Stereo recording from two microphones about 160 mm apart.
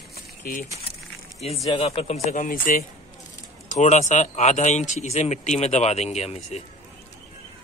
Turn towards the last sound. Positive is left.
turn(degrees=40)  # may be behind; listen again after turning